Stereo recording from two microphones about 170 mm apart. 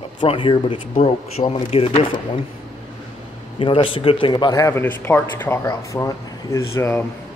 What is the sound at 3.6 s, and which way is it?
Speech, 30° left (ahead or behind).